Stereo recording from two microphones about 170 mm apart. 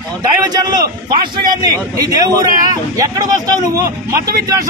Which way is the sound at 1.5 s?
20° right (ahead or behind).